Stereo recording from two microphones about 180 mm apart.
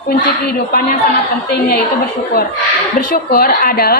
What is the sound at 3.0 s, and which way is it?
A woman's voice, 50° left (ahead or behind).